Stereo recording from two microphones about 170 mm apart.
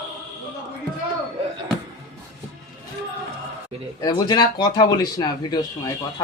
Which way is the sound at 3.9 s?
25° left (ahead or behind).